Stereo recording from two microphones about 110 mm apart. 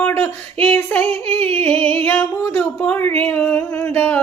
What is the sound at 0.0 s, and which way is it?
Female singing, 15° left (ahead or behind).